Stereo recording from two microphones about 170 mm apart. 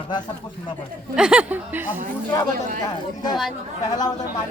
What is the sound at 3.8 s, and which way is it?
Speech, 25° left (ahead or behind).